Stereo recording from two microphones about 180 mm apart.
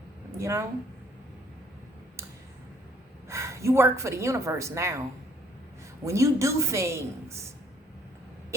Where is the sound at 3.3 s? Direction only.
15° right (ahead or behind).